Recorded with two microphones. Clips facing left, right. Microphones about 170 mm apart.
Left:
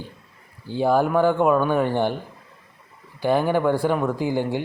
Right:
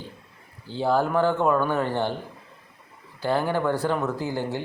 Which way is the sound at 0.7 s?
15° left (ahead or behind).